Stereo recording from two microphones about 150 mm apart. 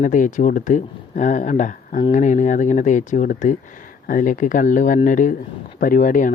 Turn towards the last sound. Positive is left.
turn(degrees=65)  # may be behind; listen again after turning